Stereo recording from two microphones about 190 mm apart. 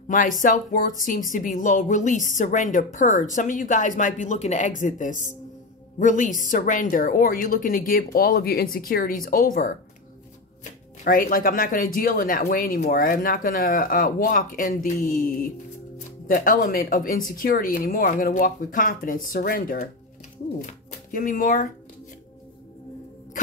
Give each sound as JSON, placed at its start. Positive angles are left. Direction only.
{"t": 0.1, "sound": "speech", "side_deg": 45}